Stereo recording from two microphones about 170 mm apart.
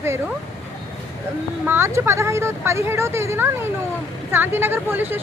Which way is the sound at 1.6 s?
15° right (ahead or behind).